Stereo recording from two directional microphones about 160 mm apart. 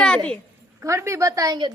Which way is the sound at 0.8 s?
20° right (ahead or behind).